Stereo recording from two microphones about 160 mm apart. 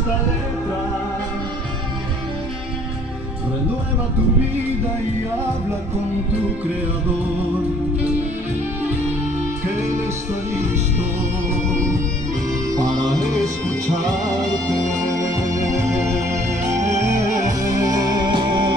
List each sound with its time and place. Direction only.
14.7 s organ: 20° right (ahead or behind)
16.8 s music: 50° right (ahead or behind)
17.4 s music: 20° right (ahead or behind)